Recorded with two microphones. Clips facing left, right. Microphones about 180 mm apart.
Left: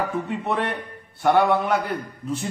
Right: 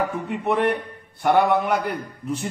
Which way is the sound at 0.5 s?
10° right (ahead or behind).